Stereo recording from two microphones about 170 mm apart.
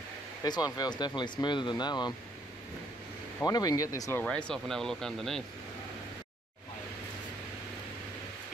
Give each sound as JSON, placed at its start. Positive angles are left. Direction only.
{"t": 0.4, "sound": "speech", "side_deg": 20}
{"t": 3.4, "sound": "speech", "side_deg": 20}
{"t": 4.2, "sound": "speech", "side_deg": 5}